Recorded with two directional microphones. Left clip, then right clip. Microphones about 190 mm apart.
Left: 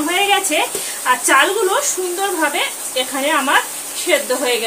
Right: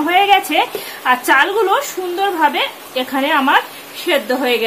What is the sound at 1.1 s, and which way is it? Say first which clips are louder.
Speech: right 1 dB; 55° right (ahead or behind).